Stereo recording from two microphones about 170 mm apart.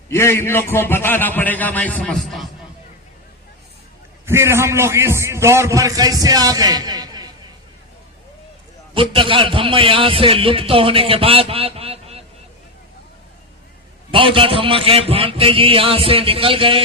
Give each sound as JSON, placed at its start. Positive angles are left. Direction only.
{"t": 0.1, "sound": "a man's voice", "side_deg": 15}
{"t": 4.3, "sound": "a man's voice", "side_deg": -15}
{"t": 9.0, "sound": "a man's voice", "side_deg": -30}
{"t": 14.1, "sound": "a man's voice", "side_deg": -30}